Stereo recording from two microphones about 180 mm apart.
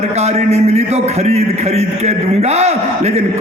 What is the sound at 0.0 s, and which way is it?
A man's voice, 35° right (ahead or behind).